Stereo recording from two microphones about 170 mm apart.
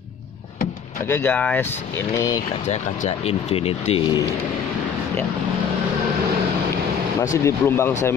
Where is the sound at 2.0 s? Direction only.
20° left (ahead or behind).